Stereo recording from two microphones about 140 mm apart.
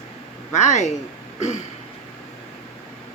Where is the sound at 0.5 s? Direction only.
55° left (ahead or behind).